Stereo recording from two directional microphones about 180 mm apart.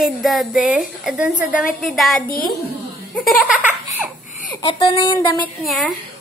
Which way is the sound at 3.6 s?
10° right (ahead or behind).